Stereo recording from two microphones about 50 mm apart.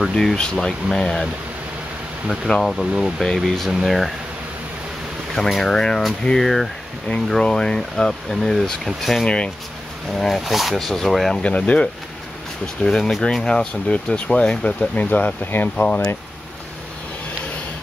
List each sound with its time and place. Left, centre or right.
0.1 s speech: centre
2.2 s speech: centre
5.3 s speech: centre
9.2 s speech: centre
10.1 s speech: centre
11.4 s speech: left
12.8 s speech: centre
14.8 s speech: left